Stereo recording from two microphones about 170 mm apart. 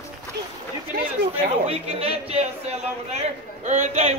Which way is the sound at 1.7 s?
35° right (ahead or behind).